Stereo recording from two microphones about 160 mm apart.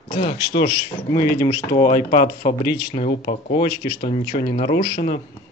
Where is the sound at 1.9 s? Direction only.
55° left (ahead or behind).